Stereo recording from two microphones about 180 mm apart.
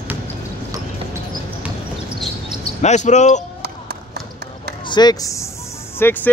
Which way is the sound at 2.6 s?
40° left (ahead or behind).